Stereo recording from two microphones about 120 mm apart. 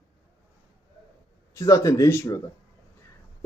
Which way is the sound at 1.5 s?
30° left (ahead or behind).